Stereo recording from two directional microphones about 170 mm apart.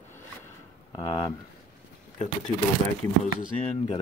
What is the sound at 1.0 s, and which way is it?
Speech, 35° left (ahead or behind).